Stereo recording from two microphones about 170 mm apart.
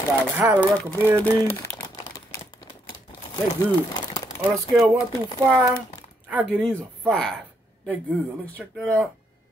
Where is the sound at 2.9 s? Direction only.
30° left (ahead or behind).